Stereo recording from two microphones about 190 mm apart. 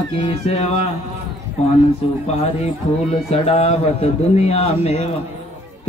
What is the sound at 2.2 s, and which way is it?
A man's voice, 35° left (ahead or behind).